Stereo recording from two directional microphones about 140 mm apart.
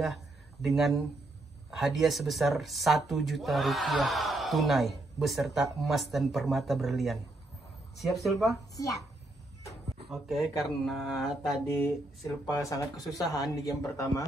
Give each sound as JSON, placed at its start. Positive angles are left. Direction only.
{"t": 0.7, "sound": "speech", "side_deg": 0}
{"t": 10.2, "sound": "speech", "side_deg": 0}
{"t": 12.5, "sound": "a man's voice", "side_deg": 25}